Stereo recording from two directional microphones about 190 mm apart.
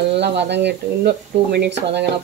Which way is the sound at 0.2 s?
65° right (ahead or behind).